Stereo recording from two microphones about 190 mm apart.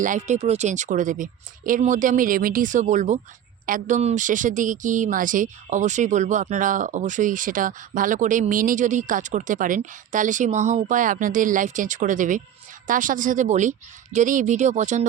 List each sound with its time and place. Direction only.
0.0 s a woman's voice: 40° right (ahead or behind)